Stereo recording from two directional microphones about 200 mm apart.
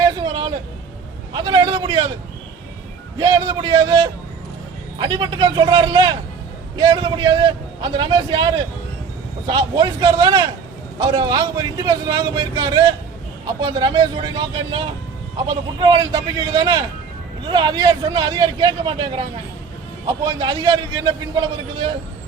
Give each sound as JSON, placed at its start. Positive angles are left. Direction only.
{"t": 0.0, "sound": "vehicle", "side_deg": -20}
{"t": 1.3, "sound": "a sound", "side_deg": -20}
{"t": 3.2, "sound": "a man's voice", "side_deg": -20}